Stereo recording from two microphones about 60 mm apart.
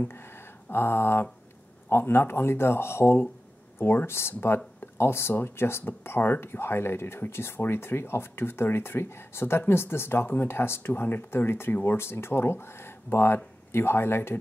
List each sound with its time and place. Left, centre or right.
0.7 s speech: left